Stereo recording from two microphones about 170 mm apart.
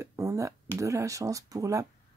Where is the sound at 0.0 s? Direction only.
20° right (ahead or behind).